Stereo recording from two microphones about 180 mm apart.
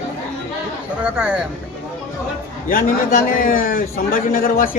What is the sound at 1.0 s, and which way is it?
Speech, 10° right (ahead or behind).